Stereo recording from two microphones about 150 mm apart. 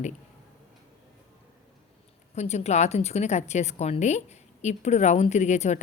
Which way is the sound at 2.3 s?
45° left (ahead or behind).